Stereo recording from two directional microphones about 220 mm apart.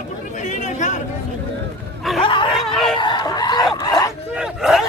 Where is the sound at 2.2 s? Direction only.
20° left (ahead or behind).